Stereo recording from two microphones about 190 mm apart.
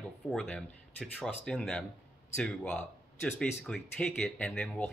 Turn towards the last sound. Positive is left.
turn(degrees=5)  # may be behind; listen again after turning